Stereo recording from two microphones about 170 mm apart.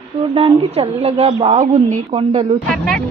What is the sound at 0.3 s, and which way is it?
A woman's voice, 35° right (ahead or behind).